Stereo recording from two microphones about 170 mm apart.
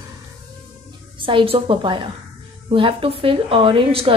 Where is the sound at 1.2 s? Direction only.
30° right (ahead or behind).